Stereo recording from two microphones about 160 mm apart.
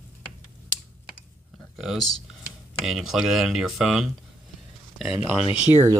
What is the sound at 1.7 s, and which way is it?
Speech, centre (ahead or behind).